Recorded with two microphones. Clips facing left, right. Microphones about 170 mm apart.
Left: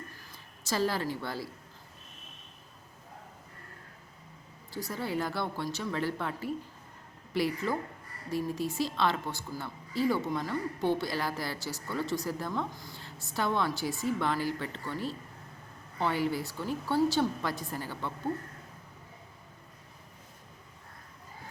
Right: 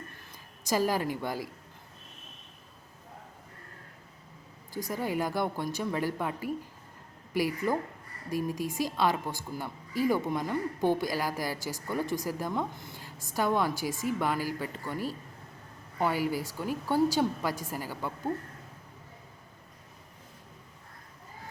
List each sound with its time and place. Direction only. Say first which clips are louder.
0.6 s a woman's voice: right 2 dB; 15° right (ahead or behind)
4.7 s a woman's voice: right 2 dB; 15° right (ahead or behind)
12.7 s a woman's voice: right 1 dB; 20° right (ahead or behind)
13.3 s a woman's voice: right 2 dB; 10° right (ahead or behind)